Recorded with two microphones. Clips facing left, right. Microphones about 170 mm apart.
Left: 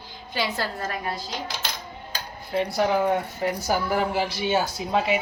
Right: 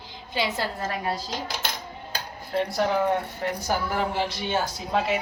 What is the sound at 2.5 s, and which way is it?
Speech, centre (ahead or behind).